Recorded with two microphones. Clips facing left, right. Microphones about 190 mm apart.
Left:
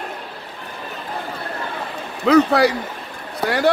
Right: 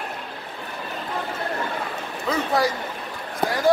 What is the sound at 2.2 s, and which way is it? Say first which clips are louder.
A man's voice: left 9 dB; 70° left (ahead or behind).